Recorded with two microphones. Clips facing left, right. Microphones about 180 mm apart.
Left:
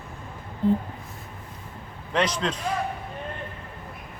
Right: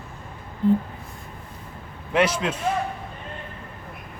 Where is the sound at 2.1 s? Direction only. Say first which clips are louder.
Right 3 dB; 10° right (ahead or behind).